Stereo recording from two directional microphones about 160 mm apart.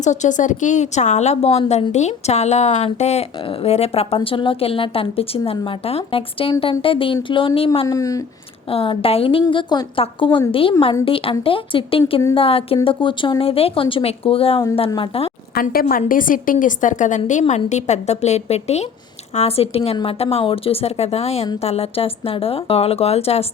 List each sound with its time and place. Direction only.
0.0 s a woman's voice: 50° left (ahead or behind)
7.9 s speech: 20° left (ahead or behind)
8.7 s speech: 35° left (ahead or behind)
15.5 s a woman's voice: 65° left (ahead or behind); by 23.5 s 40° left (ahead or behind)